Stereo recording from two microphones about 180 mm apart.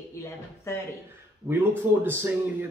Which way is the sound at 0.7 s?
15° left (ahead or behind).